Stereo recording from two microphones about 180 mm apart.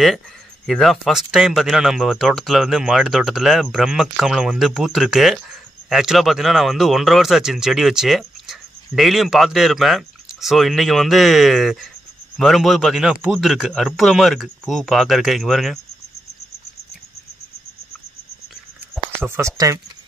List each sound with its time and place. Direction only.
0.7 s speech: centre (ahead or behind)
19.2 s speech: 15° right (ahead or behind)